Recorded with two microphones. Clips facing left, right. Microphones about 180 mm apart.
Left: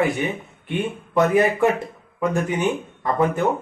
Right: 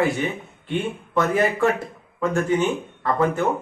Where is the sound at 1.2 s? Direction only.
20° left (ahead or behind).